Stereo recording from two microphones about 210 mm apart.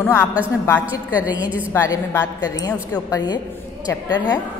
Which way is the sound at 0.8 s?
5° right (ahead or behind).